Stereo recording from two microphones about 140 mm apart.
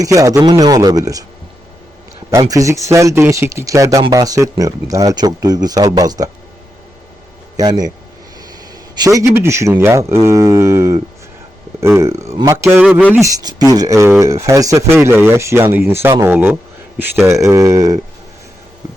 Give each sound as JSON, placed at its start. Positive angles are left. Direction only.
{"t": 0.0, "sound": "speech", "side_deg": -25}
{"t": 2.3, "sound": "speech", "side_deg": -25}
{"t": 7.5, "sound": "a man's voice", "side_deg": -30}
{"t": 9.0, "sound": "speech", "side_deg": -25}
{"t": 12.8, "sound": "speech", "side_deg": -5}
{"t": 13.1, "sound": "speech", "side_deg": -25}